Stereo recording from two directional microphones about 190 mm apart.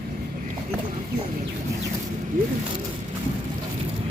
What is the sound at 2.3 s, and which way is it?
Vehicle, 45° right (ahead or behind).